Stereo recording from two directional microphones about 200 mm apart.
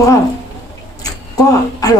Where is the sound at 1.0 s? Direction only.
20° left (ahead or behind).